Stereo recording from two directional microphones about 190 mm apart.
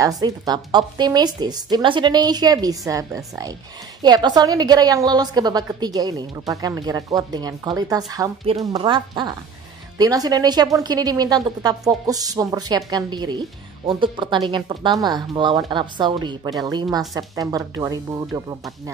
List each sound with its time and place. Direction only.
0.0 s a woman's voice: 20° right (ahead or behind)